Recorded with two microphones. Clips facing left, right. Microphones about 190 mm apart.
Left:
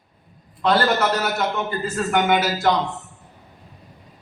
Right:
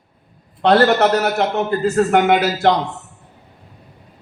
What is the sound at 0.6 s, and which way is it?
A man's voice, 65° right (ahead or behind).